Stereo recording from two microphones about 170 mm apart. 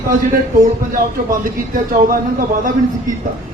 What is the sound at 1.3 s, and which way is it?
Speech, 55° right (ahead or behind).